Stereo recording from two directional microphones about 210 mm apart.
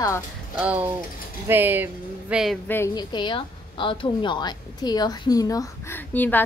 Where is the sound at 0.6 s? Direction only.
5° right (ahead or behind).